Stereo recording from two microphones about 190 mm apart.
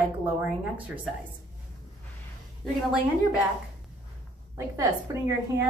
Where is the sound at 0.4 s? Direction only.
10° right (ahead or behind).